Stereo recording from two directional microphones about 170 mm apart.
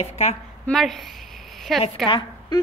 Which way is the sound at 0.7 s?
Centre (ahead or behind).